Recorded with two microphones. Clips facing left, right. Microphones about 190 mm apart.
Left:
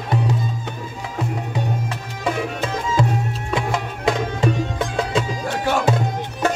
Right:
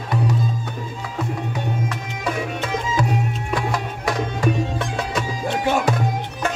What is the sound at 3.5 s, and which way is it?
Music, 25° left (ahead or behind).